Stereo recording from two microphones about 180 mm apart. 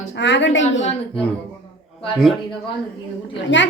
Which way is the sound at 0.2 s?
85° left.